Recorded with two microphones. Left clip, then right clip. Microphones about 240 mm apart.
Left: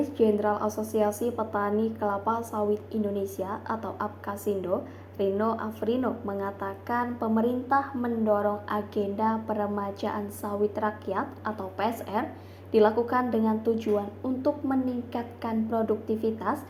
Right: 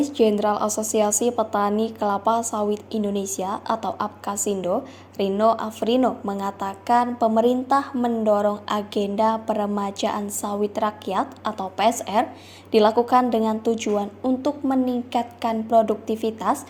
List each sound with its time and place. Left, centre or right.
0.0 s a woman's voice: right